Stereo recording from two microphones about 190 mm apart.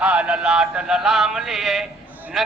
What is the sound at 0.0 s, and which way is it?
Speech, 5° right (ahead or behind).